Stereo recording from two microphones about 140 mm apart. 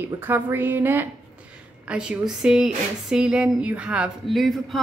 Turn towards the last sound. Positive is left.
turn(degrees=0)  # may be behind; listen again after turning